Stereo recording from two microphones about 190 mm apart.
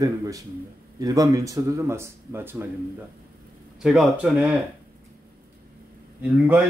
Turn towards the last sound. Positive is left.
turn(degrees=-5)  # may be behind; listen again after turning